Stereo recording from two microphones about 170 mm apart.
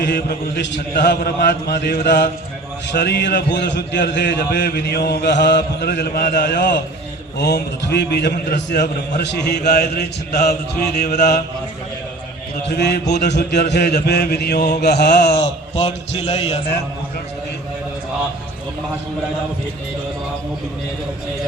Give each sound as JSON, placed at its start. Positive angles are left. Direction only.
{"t": 0.0, "sound": "a man's voice", "side_deg": 70}
{"t": 12.6, "sound": "a man's voice", "side_deg": 75}
{"t": 15.3, "sound": "a man's voice", "side_deg": 35}